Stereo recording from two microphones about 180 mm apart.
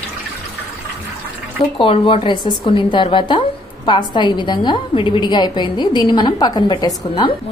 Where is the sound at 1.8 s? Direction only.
30° left (ahead or behind).